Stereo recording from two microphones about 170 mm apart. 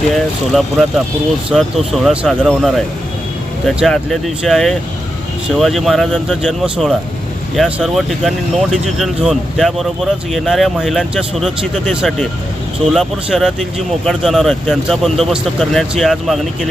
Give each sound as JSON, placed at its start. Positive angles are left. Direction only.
{"t": 0.1, "sound": "speech", "side_deg": 0}